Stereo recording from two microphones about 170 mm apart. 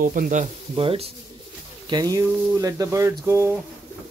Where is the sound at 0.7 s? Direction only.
35° right (ahead or behind).